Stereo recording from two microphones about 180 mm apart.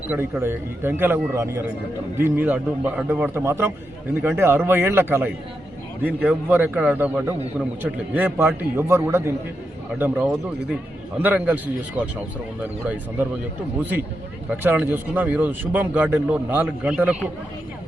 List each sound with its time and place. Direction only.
0.1 s a man's voice: 10° right (ahead or behind)
14.5 s a man's voice: 10° right (ahead or behind)